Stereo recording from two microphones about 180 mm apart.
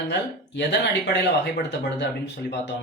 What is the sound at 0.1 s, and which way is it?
Speech, 70° left (ahead or behind).